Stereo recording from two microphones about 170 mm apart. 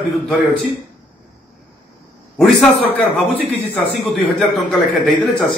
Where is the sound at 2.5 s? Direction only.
5° left (ahead or behind).